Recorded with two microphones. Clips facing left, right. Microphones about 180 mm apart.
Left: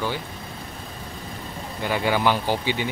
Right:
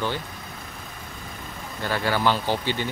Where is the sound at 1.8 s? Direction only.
15° left (ahead or behind).